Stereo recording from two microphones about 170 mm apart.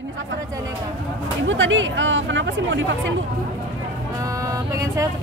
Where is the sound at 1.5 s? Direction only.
90° right.